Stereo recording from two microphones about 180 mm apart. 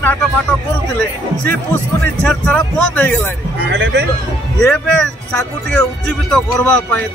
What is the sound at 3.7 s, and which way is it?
Speech, 75° right (ahead or behind).